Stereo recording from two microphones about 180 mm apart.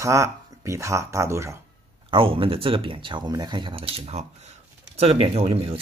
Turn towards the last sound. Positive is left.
turn(degrees=-30)  # may be behind; listen again after turning